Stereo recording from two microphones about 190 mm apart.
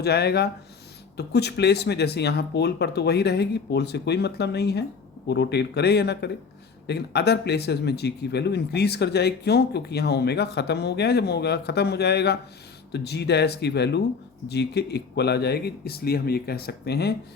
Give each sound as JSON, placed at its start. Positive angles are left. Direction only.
{"t": 0.0, "sound": "speech", "side_deg": 60}